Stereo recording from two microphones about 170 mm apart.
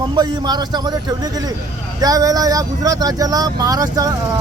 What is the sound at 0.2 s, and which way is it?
Speech, 25° right (ahead or behind).